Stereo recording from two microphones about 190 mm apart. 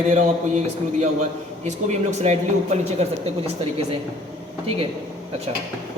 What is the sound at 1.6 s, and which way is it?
Speech, 35° right (ahead or behind).